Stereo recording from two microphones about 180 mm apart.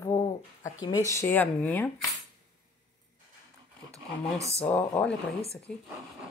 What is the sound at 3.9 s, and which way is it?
Speech, 15° right (ahead or behind).